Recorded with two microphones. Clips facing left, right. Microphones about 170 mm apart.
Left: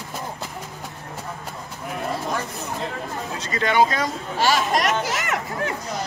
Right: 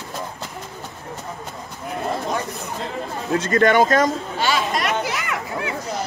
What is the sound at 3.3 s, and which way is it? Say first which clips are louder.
Speech: right 6 dB; 50° right (ahead or behind).